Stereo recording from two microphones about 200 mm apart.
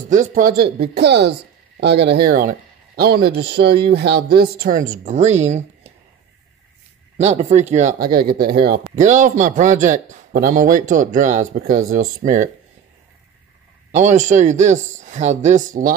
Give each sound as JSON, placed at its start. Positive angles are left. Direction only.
{"t": 0.1, "sound": "speech", "side_deg": -40}
{"t": 0.9, "sound": "speech", "side_deg": -55}
{"t": 7.2, "sound": "speech", "side_deg": -35}
{"t": 11.8, "sound": "speech", "side_deg": -90}
{"t": 12.2, "sound": "speech", "side_deg": -40}
{"t": 13.9, "sound": "speech", "side_deg": -35}